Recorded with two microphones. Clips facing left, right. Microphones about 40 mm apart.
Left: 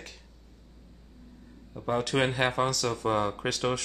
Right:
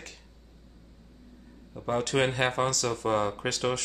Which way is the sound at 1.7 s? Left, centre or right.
Centre.